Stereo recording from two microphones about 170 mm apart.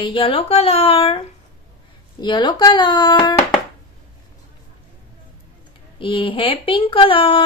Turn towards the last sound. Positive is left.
turn(degrees=30)  # may be behind; listen again after turning